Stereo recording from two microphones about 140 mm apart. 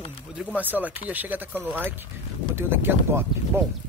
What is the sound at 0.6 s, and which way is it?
Speech, 10° right (ahead or behind).